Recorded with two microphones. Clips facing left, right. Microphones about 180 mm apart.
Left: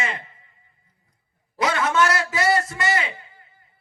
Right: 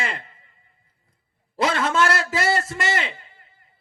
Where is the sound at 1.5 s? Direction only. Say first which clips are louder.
Even; 25° right (ahead or behind).